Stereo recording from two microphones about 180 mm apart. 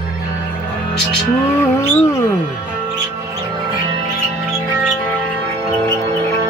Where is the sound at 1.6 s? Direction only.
15° left (ahead or behind).